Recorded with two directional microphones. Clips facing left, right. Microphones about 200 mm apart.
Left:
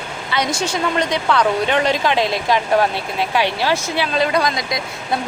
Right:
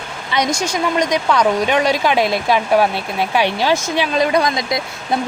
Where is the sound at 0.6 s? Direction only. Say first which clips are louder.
Right 2 dB; 15° right (ahead or behind).